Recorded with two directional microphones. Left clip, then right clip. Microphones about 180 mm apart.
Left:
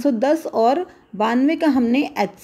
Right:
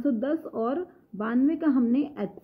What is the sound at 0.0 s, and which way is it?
Speech, 10° left (ahead or behind).